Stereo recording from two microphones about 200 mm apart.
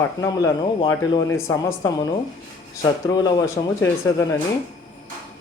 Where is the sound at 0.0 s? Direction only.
15° left (ahead or behind).